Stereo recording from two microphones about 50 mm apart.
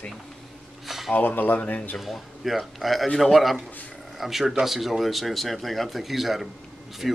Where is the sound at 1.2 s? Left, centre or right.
Left.